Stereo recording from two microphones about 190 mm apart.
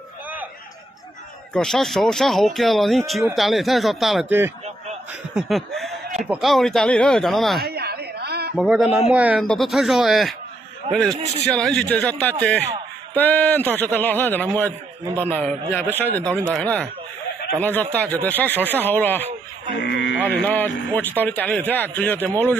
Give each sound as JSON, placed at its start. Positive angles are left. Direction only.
{"t": 1.5, "sound": "speech", "side_deg": 0}
{"t": 5.3, "sound": "speech", "side_deg": 0}
{"t": 7.6, "sound": "a sound", "side_deg": -55}
{"t": 8.5, "sound": "a man's voice", "side_deg": 0}
{"t": 18.6, "sound": "speech", "side_deg": -10}
{"t": 18.9, "sound": "a man's voice", "side_deg": 10}
{"t": 19.7, "sound": "sheep", "side_deg": 65}
{"t": 20.2, "sound": "a man's voice", "side_deg": 10}